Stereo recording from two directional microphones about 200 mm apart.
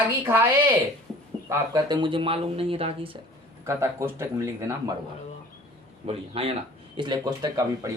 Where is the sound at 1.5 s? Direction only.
20° right (ahead or behind).